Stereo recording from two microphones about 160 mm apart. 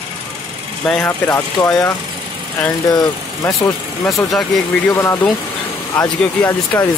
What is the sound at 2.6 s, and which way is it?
Speech, 20° left (ahead or behind).